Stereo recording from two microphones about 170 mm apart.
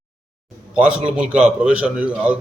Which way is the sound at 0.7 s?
5° right (ahead or behind).